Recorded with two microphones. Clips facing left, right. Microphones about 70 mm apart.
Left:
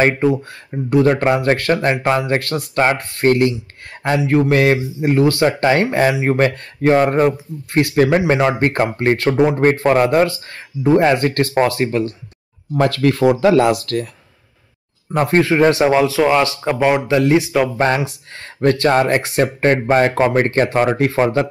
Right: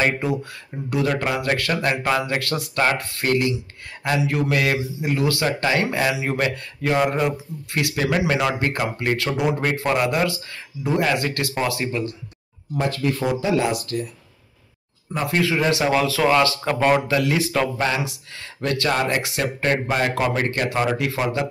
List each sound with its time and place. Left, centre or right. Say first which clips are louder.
0.0 s a man's voice: left 7 dB; left
12.7 s speech: left 7 dB; left
15.1 s a man's voice: left 8 dB; left